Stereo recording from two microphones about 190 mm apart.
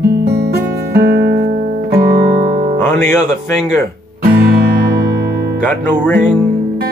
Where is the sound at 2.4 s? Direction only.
35° right (ahead or behind).